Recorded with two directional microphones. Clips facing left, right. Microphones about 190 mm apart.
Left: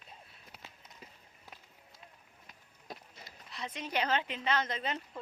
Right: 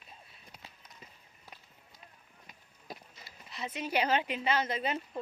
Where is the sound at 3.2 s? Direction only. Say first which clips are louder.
Right 3 dB; 5° right (ahead or behind).